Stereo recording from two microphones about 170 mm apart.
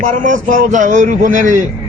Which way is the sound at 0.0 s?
50° right (ahead or behind).